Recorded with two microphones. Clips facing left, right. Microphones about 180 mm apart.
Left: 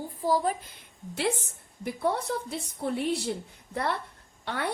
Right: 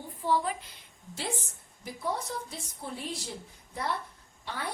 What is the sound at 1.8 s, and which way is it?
A woman's voice, 65° left (ahead or behind).